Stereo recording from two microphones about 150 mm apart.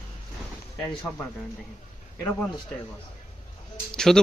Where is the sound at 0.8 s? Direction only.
15° left (ahead or behind).